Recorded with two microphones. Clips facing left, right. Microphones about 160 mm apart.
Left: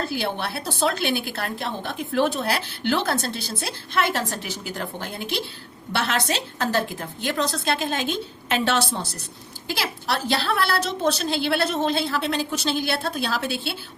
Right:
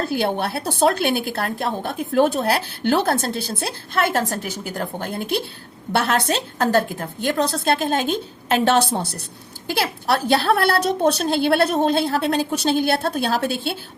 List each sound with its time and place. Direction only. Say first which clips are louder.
0.1 s a woman's voice: right 5 dB; 50° right (ahead or behind)